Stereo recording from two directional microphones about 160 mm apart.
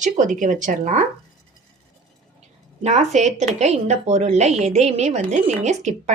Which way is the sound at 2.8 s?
45° right (ahead or behind).